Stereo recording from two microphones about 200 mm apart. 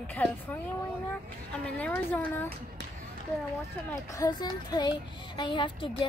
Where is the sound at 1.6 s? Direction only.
5° left (ahead or behind).